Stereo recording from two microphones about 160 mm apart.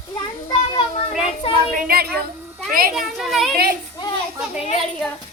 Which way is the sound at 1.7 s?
70° right (ahead or behind).